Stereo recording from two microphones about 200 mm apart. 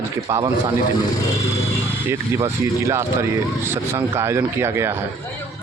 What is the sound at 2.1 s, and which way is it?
Speech, 10° right (ahead or behind).